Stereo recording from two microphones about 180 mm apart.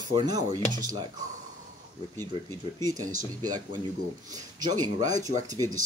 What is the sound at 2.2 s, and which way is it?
Speech, 15° left (ahead or behind).